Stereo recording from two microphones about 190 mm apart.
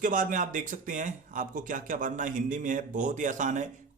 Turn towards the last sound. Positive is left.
turn(degrees=-40)  # may be behind; listen again after turning